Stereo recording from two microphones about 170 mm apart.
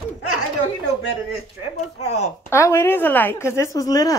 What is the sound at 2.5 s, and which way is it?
Speech, 15° left (ahead or behind).